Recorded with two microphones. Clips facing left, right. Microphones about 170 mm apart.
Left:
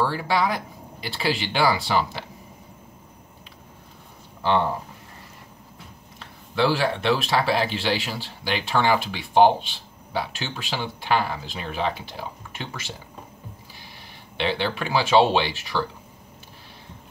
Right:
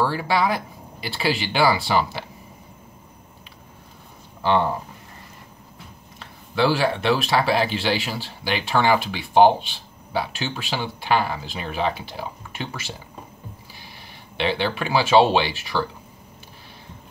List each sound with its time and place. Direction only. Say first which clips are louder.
0.0 s speech: right 2 dB; 5° right (ahead or behind)
6.1 s speech: right 1 dB; 5° right (ahead or behind)
14.3 s speech: right 2 dB; 5° right (ahead or behind)